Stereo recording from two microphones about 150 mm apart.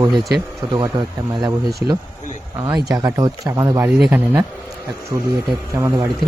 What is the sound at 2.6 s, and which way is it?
Speech, 25° right (ahead or behind).